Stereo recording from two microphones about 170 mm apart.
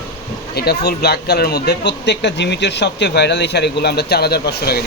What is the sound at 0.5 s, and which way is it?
Speech, 70° left (ahead or behind).